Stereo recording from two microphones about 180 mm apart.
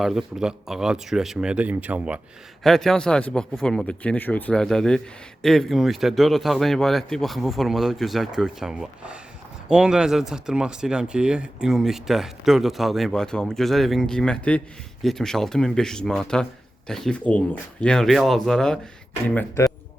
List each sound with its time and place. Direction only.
0.0 s speech: centre (ahead or behind)